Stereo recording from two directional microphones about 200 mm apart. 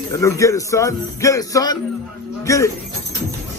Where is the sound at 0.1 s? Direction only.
15° left (ahead or behind).